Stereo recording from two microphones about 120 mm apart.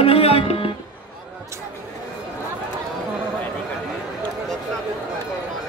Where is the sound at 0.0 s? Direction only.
55° left (ahead or behind).